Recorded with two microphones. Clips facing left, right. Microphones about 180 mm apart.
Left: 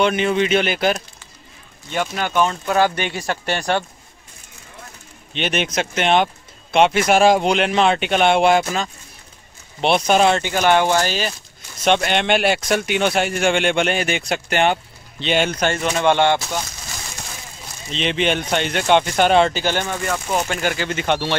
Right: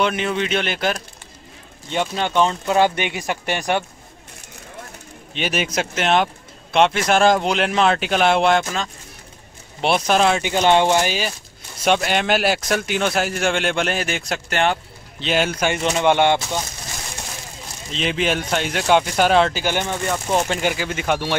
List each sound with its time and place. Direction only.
0.0 s speech: centre (ahead or behind)
1.9 s speech: 25° right (ahead or behind)
5.3 s speech: 5° right (ahead or behind)
10.4 s speech: 20° right (ahead or behind); by 15.7 s 5° right (ahead or behind)
15.7 s speech: 15° right (ahead or behind)
17.9 s speech: centre (ahead or behind)
19.6 s speech: 15° right (ahead or behind)